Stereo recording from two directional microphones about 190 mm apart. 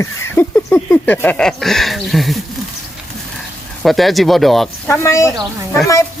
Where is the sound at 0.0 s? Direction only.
10° left (ahead or behind).